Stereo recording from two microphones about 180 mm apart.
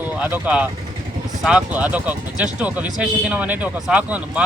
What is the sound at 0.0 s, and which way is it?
Speech, 10° right (ahead or behind).